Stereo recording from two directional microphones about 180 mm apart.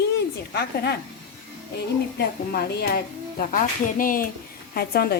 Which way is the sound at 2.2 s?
60° left (ahead or behind).